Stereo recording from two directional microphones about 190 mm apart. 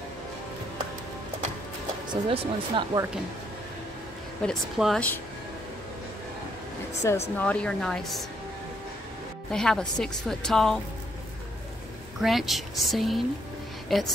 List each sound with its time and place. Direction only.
2.2 s speech: 25° right (ahead or behind)
4.4 s a woman's voice: centre (ahead or behind)
7.0 s a woman's voice: 15° left (ahead or behind)
9.5 s a woman's voice: 5° left (ahead or behind)
12.2 s a woman's voice: centre (ahead or behind)